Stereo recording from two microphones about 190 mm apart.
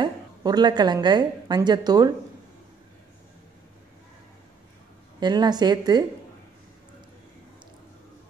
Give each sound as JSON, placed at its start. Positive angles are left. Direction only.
{"t": 0.0, "sound": "a woman's voice", "side_deg": -20}
{"t": 5.2, "sound": "speech", "side_deg": -20}